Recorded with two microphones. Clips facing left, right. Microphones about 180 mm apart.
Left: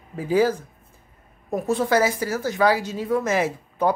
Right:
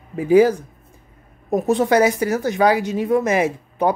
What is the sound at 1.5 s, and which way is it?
Speech, 20° right (ahead or behind).